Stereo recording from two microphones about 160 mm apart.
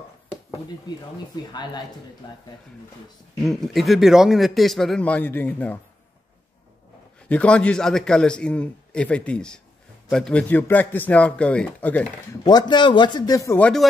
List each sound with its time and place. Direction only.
0.8 s a man's voice: 25° left (ahead or behind)
3.4 s speech: centre (ahead or behind)
7.2 s a man's voice: 10° left (ahead or behind)
12.4 s a man's voice: 25° left (ahead or behind)
13.6 s a man's voice: 5° left (ahead or behind)